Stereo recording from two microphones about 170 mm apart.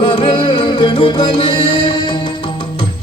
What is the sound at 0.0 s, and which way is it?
Music, 30° left (ahead or behind).